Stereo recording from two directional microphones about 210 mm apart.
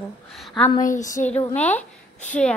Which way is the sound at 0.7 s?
40° left (ahead or behind).